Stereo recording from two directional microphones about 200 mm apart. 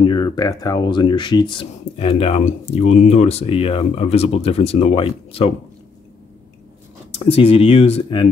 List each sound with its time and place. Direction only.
0.0 s speech: 20° left (ahead or behind)
7.1 s speech: 30° left (ahead or behind)